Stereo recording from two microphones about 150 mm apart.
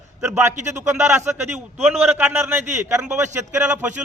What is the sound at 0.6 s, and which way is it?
A man's voice, 15° right (ahead or behind).